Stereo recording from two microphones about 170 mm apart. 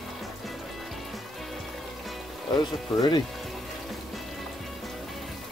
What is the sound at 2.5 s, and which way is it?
Speech, 25° left (ahead or behind).